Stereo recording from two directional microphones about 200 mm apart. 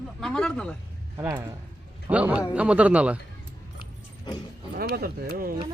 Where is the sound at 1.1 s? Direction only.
15° right (ahead or behind).